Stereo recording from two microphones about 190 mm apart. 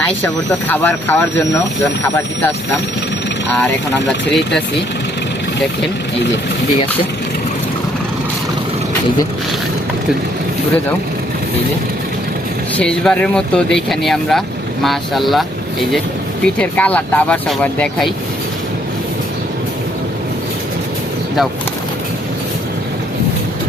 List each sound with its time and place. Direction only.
0.7 s speech: 10° left (ahead or behind)
12.7 s speech: 5° left (ahead or behind)